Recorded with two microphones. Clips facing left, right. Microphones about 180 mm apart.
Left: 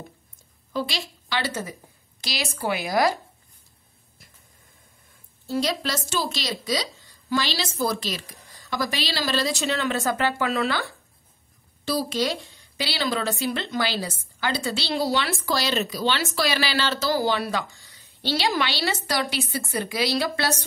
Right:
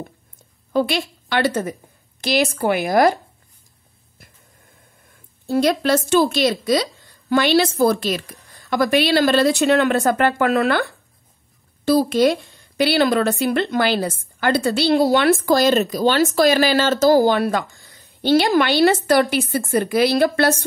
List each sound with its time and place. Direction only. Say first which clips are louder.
0.7 s speech: right 9 dB; 55° right (ahead or behind)
5.5 s speech: right 9 dB; 55° right (ahead or behind)